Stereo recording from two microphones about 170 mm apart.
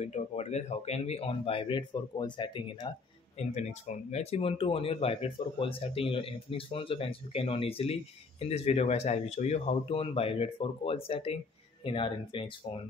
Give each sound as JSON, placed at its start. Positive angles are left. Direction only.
{"t": 0.0, "sound": "speech", "side_deg": 40}
{"t": 3.3, "sound": "speech", "side_deg": 40}